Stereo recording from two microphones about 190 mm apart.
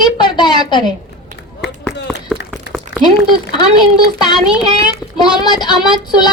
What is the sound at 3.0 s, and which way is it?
Speech, 25° left (ahead or behind).